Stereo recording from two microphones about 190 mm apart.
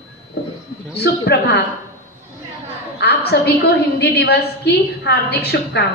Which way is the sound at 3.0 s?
60° left (ahead or behind).